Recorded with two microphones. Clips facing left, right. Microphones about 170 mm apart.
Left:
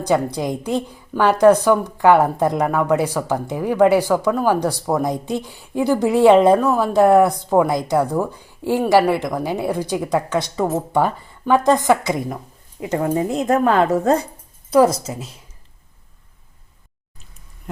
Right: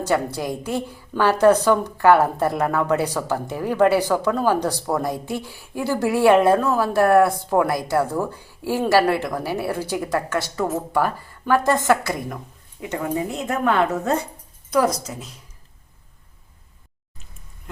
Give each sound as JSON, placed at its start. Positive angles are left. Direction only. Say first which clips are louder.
{"t": 0.0, "sound": "a woman's voice", "louder": "left 3 dB", "side_deg": 15}
{"t": 12.8, "sound": "a woman's voice", "louder": "left 5 dB", "side_deg": 35}